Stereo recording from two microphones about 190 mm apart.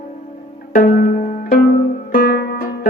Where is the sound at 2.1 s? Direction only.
55° left (ahead or behind).